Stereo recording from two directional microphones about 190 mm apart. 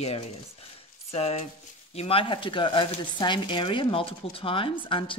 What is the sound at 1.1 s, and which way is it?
Speech, 35° left (ahead or behind).